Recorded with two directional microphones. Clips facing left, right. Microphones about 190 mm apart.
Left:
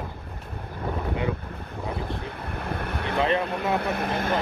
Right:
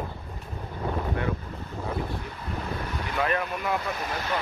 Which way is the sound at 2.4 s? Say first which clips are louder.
Left 1 dB; 60° left (ahead or behind).